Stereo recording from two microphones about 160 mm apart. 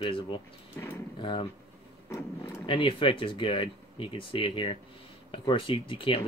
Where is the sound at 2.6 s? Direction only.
35° left (ahead or behind).